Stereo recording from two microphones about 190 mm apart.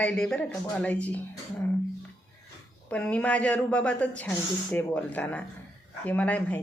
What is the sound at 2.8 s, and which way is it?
Speech, 5° left (ahead or behind).